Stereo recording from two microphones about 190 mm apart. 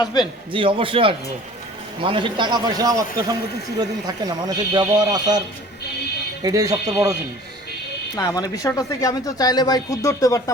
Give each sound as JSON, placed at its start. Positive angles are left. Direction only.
{"t": 0.0, "sound": "speech", "side_deg": 20}
{"t": 0.5, "sound": "speech", "side_deg": -25}
{"t": 6.4, "sound": "speech", "side_deg": -20}
{"t": 8.1, "sound": "speech", "side_deg": 20}